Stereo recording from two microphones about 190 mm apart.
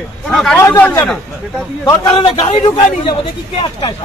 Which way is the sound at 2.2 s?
25° left (ahead or behind).